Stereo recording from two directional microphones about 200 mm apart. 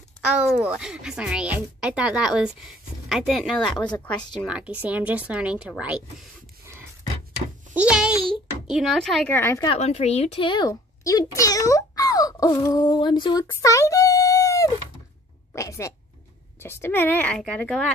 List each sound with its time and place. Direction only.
0.2 s a woman's voice: 5° right (ahead or behind)
3.6 s speech: 20° left (ahead or behind)
3.9 s a woman's voice: 5° left (ahead or behind)
4.5 s a woman's voice: 5° right (ahead or behind)
7.7 s a woman's voice: 5° right (ahead or behind); by 9.7 s 10° left (ahead or behind)
9.7 s a child's voice: 30° left (ahead or behind); by 17.9 s 5° left (ahead or behind)